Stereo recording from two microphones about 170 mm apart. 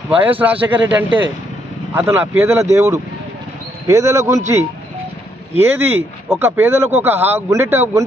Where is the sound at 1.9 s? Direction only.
15° right (ahead or behind).